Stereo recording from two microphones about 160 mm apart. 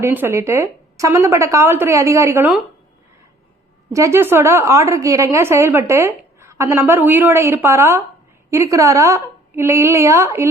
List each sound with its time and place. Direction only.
0.0 s a woman's voice: 15° right (ahead or behind)
3.9 s a woman's voice: 15° right (ahead or behind)